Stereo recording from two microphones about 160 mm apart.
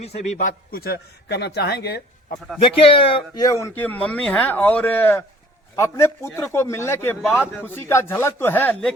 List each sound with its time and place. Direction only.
0.0 s a man's voice: 40° left (ahead or behind); by 2.0 s 90° left
2.6 s speech: 35° left (ahead or behind)
3.4 s speech: 20° left (ahead or behind)